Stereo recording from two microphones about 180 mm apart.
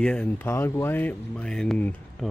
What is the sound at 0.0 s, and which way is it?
Speech, 5° left (ahead or behind).